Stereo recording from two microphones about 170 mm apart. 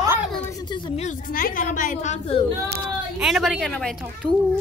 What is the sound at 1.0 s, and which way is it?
A woman's voice, 50° left (ahead or behind).